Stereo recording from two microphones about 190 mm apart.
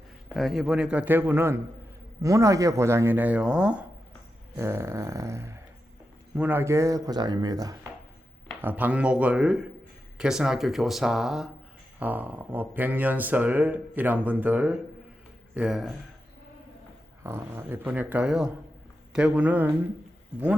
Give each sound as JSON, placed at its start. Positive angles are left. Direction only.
{"t": 0.3, "sound": "speech", "side_deg": 0}
{"t": 8.4, "sound": "speech", "side_deg": -10}
{"t": 17.2, "sound": "speech", "side_deg": -15}